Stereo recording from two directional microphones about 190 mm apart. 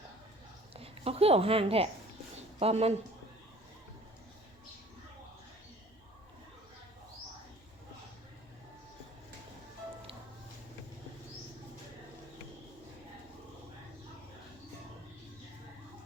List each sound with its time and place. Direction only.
0.7 s a woman's voice: 30° right (ahead or behind)